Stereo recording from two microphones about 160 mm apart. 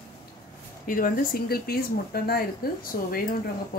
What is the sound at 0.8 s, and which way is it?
Speech, 60° left (ahead or behind).